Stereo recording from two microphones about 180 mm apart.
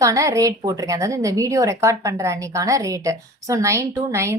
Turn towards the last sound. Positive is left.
turn(degrees=-15)  # may be behind; listen again after turning